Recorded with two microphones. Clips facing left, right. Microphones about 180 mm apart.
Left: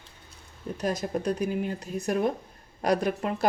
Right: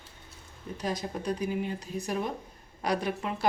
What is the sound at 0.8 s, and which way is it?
A woman's voice, 45° left (ahead or behind).